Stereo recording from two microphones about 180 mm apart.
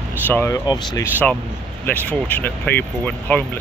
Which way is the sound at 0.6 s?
25° left (ahead or behind).